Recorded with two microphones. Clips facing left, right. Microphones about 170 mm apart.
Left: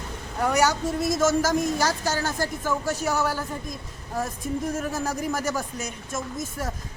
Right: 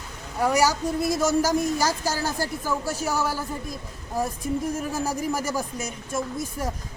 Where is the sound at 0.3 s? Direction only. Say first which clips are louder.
Right 1 dB; 10° right (ahead or behind).